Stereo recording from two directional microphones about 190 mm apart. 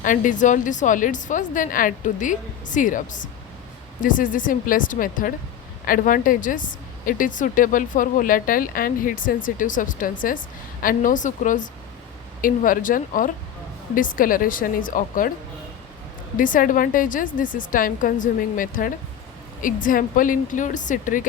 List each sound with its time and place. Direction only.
0.0 s a woman's voice: 45° left (ahead or behind)
16.4 s a woman's voice: 45° left (ahead or behind)